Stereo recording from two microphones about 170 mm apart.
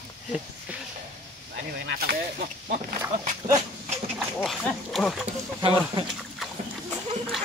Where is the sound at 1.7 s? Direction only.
80° right.